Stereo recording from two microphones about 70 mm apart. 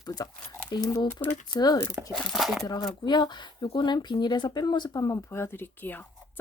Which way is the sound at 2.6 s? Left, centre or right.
Left.